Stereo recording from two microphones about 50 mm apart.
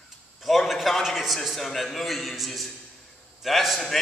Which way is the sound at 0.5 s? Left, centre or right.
Centre.